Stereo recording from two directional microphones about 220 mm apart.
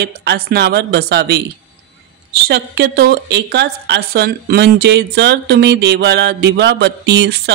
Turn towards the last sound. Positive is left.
turn(degrees=-50)  # may be behind; listen again after turning